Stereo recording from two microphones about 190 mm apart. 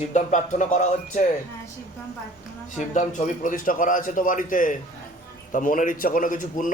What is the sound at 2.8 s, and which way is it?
A man's voice, 40° left (ahead or behind).